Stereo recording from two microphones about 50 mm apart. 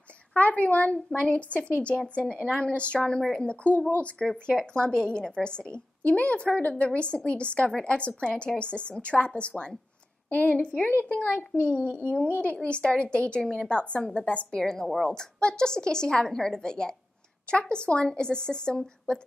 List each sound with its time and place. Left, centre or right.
0.3 s a woman's voice: left
0.9 s a woman's voice: centre
11.8 s a woman's voice: right
12.6 s a woman's voice: left
14.6 s a woman's voice: centre
15.0 s a woman's voice: centre